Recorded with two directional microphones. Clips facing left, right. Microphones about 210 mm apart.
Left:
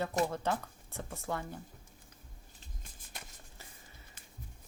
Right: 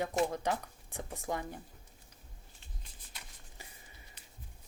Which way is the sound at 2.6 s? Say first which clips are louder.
Left 3 dB; 50° left (ahead or behind).